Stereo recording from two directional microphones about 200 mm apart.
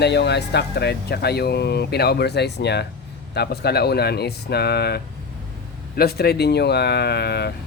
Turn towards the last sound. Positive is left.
turn(degrees=55)  # may be behind; listen again after turning